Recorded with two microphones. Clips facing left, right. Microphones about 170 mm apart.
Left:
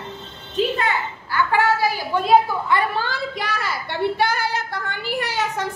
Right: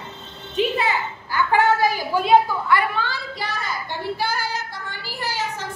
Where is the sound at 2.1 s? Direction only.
5° right (ahead or behind).